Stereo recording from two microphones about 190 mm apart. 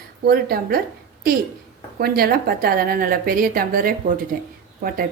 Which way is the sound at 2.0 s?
55° right (ahead or behind).